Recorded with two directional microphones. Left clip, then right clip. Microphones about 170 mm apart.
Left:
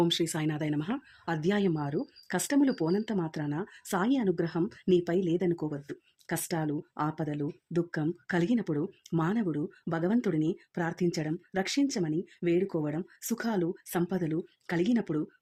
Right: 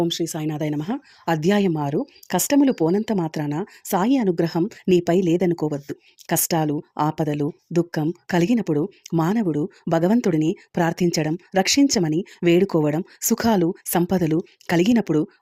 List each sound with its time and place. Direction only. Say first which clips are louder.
0.0 s speech: right 5 dB; 20° right (ahead or behind); by 15.3 s 40° right (ahead or behind)